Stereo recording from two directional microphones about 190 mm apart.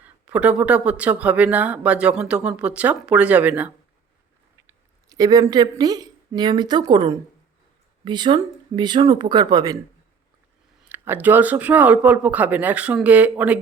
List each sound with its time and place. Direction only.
0.0 s speech: 5° right (ahead or behind)
10.8 s speech: 10° right (ahead or behind)